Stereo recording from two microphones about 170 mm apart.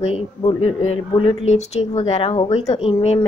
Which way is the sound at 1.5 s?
40° left (ahead or behind).